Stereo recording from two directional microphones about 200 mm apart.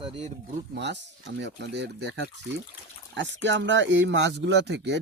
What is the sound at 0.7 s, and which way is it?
Speech, 60° right (ahead or behind).